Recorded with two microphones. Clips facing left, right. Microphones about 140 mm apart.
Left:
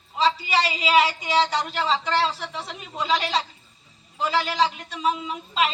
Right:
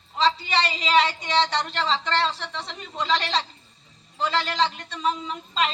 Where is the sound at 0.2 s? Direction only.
5° left (ahead or behind).